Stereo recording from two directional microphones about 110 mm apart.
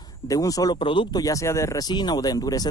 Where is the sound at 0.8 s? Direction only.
50° left (ahead or behind).